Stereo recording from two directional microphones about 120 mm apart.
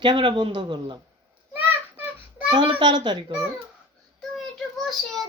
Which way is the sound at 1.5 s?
15° right (ahead or behind).